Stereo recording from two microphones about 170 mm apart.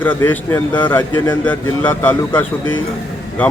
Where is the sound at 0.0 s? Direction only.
10° left (ahead or behind).